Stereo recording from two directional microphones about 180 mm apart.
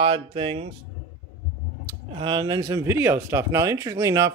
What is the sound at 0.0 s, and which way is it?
Speech, 30° right (ahead or behind).